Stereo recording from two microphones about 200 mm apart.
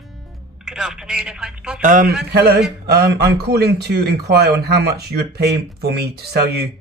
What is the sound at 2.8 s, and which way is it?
Speech, 55° right (ahead or behind).